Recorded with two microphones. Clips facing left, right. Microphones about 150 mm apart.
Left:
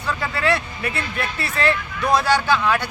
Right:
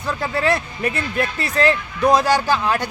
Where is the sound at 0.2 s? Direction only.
40° right (ahead or behind).